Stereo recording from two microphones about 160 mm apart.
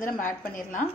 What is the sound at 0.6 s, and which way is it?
Speech, 55° left (ahead or behind).